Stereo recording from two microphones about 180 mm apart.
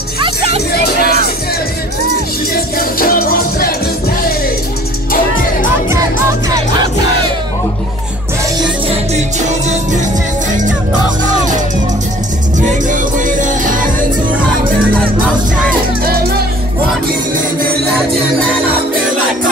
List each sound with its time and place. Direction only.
0.2 s music: 30° right (ahead or behind)
3.0 s music: 55° left (ahead or behind)
8.8 s music: 40° right (ahead or behind)
12.5 s music: 45° right (ahead or behind)